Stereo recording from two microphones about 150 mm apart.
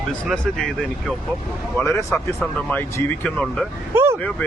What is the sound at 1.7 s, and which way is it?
Speech, 20° left (ahead or behind).